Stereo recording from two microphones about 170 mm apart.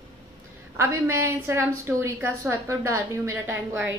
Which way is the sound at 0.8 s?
15° right (ahead or behind).